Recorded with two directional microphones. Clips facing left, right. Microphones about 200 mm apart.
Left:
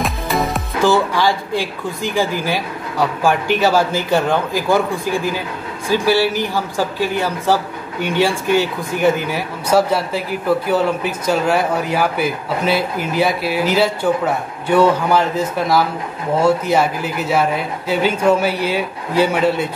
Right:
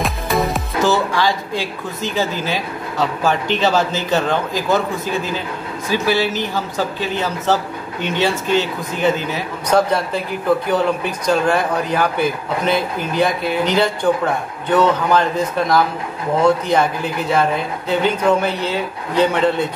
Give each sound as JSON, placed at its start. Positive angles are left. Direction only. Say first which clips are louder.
{"t": 0.0, "sound": "music", "louder": "even", "side_deg": 0}
{"t": 0.8, "sound": "speech", "louder": "left 3 dB", "side_deg": 15}